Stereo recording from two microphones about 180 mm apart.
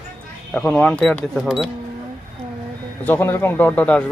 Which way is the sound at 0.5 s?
5° left (ahead or behind).